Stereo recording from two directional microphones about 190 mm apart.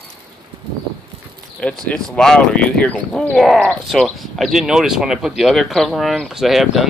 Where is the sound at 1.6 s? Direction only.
5° left (ahead or behind).